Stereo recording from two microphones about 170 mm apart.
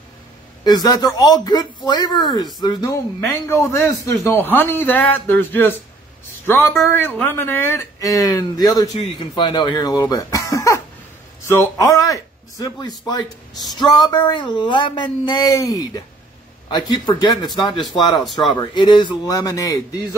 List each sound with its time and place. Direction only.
0.7 s a man's voice: 25° left (ahead or behind)
18.2 s speech: centre (ahead or behind)
18.5 s speech: 25° left (ahead or behind)